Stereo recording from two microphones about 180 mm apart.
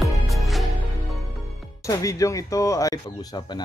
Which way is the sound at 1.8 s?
20° left (ahead or behind).